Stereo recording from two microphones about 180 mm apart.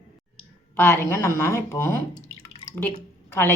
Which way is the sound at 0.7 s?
15° left (ahead or behind).